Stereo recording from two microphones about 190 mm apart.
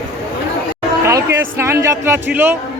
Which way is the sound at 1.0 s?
15° right (ahead or behind).